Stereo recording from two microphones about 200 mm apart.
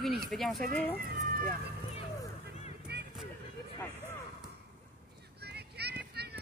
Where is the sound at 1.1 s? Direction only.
45° right (ahead or behind).